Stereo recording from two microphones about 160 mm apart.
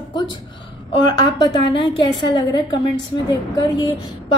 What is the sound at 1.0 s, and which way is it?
A woman's voice, 30° left (ahead or behind).